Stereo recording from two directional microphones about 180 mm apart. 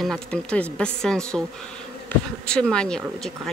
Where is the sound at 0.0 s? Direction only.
5° left (ahead or behind).